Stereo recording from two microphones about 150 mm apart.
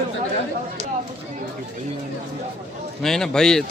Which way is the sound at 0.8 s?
45° right (ahead or behind).